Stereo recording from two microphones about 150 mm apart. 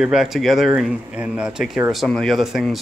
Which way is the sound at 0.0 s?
5° right (ahead or behind).